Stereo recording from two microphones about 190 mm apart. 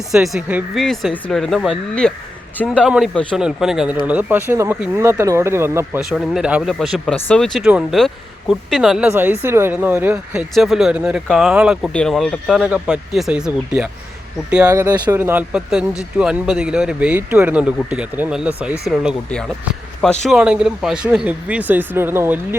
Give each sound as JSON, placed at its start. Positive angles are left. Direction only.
{"t": 0.1, "sound": "speech", "side_deg": 0}
{"t": 6.0, "sound": "speech", "side_deg": 0}
{"t": 14.7, "sound": "speech", "side_deg": -20}